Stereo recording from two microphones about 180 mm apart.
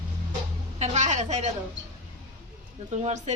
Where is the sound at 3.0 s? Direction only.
40° right (ahead or behind).